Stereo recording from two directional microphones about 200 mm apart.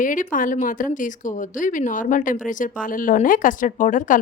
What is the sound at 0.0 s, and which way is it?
Speech, 40° left (ahead or behind).